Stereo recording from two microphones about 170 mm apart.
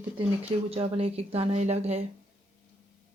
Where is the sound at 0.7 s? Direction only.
35° right (ahead or behind).